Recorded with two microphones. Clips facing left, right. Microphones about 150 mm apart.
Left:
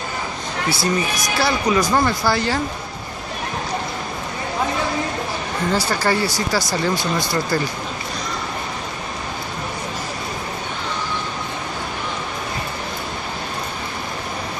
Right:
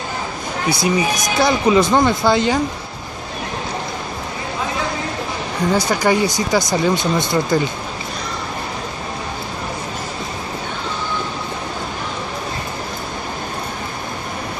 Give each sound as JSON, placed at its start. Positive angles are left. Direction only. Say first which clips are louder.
{"t": 0.7, "sound": "speech", "louder": "right 4 dB", "side_deg": -15}
{"t": 5.8, "sound": "speech", "louder": "right 4 dB", "side_deg": -15}